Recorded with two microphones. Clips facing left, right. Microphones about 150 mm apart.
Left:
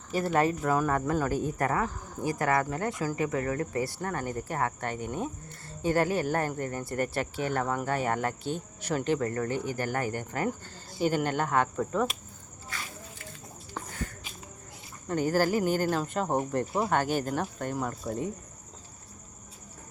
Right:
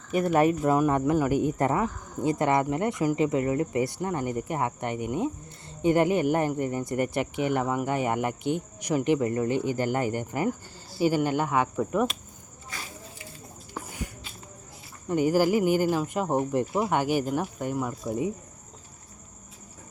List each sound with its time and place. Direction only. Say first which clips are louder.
0.3 s speech: right 4 dB; 20° right (ahead or behind)
13.7 s a sound: right 1 dB; 10° right (ahead or behind)
15.0 s speech: right 4 dB; 15° right (ahead or behind)